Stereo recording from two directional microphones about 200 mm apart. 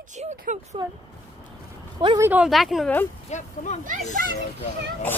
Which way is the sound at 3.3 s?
35° left (ahead or behind).